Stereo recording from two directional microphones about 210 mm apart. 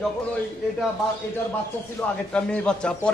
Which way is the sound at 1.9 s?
5° left (ahead or behind).